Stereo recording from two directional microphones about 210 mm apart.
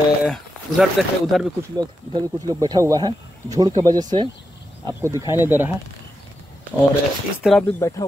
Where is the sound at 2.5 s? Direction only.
15° right (ahead or behind).